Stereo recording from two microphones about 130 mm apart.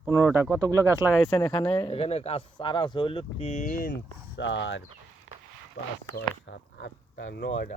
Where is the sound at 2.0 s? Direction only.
50° left (ahead or behind).